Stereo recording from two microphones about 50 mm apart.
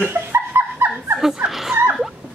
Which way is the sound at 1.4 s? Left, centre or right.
Centre.